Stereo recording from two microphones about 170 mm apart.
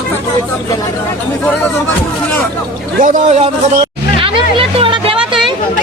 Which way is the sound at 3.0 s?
45° right (ahead or behind).